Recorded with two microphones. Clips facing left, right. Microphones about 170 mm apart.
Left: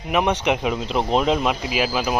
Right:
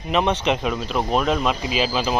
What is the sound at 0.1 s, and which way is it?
Speech, 10° left (ahead or behind).